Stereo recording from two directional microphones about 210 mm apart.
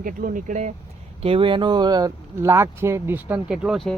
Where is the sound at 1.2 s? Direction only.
25° right (ahead or behind); by 3.9 s centre (ahead or behind).